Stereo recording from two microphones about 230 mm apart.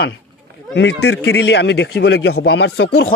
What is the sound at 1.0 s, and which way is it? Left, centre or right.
Speech, left.